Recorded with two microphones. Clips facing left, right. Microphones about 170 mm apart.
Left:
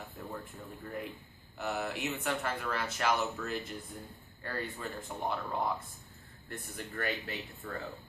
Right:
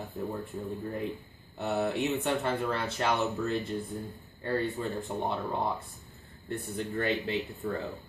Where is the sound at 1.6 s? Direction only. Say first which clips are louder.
Right 6 dB; 25° right (ahead or behind).